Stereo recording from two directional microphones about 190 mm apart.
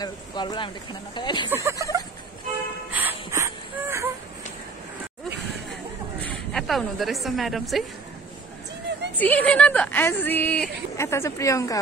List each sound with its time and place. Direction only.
0.0 s speech: 25° left (ahead or behind)
1.5 s speech: 15° right (ahead or behind)
2.9 s wheeze: 10° right (ahead or behind)
6.5 s a woman's voice: centre (ahead or behind)
9.1 s speech: 10° left (ahead or behind)